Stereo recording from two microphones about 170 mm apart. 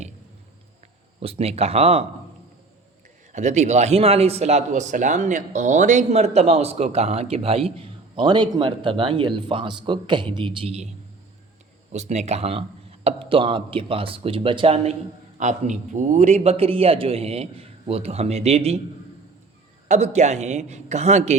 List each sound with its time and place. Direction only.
1.2 s speech: 35° right (ahead or behind)
3.3 s speech: 40° right (ahead or behind)
11.9 s speech: 40° right (ahead or behind)
15.4 s speech: 45° right (ahead or behind)
19.9 s speech: 40° right (ahead or behind)